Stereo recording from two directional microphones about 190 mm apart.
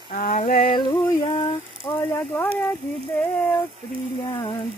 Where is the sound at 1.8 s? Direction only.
10° left (ahead or behind).